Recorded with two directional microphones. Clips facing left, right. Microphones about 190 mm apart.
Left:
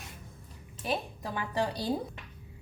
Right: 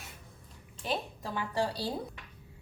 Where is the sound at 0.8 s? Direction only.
15° left (ahead or behind).